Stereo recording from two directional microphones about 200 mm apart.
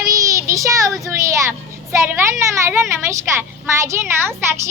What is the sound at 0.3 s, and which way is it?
Child singing, 15° right (ahead or behind).